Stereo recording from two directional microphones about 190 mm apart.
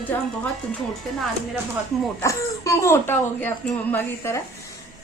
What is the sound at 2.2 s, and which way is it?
A woman's voice, 15° left (ahead or behind).